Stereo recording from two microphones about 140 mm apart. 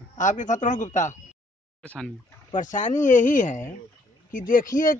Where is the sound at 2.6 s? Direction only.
65° left (ahead or behind).